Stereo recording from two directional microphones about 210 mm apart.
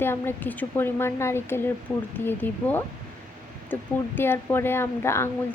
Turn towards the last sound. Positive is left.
turn(degrees=10)  # may be behind; listen again after turning